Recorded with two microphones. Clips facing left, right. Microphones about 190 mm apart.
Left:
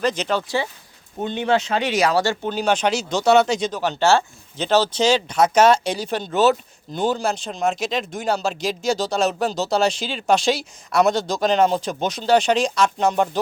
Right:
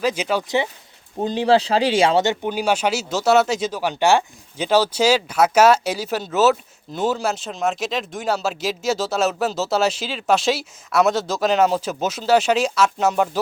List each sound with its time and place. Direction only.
0.0 s speech: 10° right (ahead or behind)
0.4 s speech: 20° right (ahead or behind)
1.2 s speech: 35° right (ahead or behind); by 13.4 s 5° right (ahead or behind)